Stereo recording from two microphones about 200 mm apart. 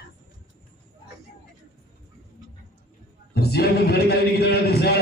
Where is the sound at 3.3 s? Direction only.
50° left (ahead or behind).